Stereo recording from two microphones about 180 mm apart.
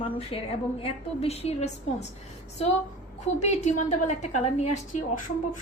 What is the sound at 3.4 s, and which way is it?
A woman's voice, 40° left (ahead or behind).